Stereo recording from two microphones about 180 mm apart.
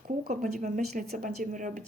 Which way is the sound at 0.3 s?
45° right (ahead or behind).